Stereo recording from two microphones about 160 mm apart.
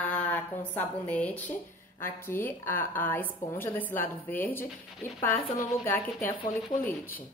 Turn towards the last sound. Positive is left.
turn(degrees=15)  # may be behind; listen again after turning